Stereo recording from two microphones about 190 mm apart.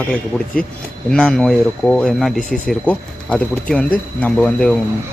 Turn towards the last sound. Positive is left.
turn(degrees=5)  # may be behind; listen again after turning